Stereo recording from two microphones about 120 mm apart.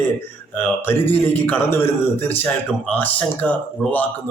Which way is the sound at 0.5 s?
15° left (ahead or behind).